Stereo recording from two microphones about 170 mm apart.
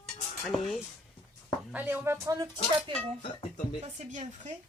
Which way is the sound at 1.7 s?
10° right (ahead or behind).